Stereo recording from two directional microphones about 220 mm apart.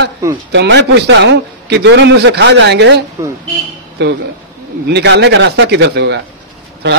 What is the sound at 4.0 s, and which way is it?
A man's voice, 50° right (ahead or behind).